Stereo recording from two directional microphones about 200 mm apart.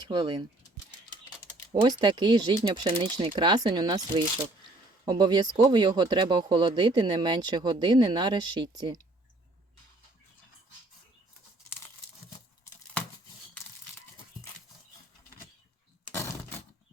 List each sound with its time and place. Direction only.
0.1 s speech: 20° right (ahead or behind)
1.7 s speech: 20° right (ahead or behind)
16.1 s a sound: 10° left (ahead or behind)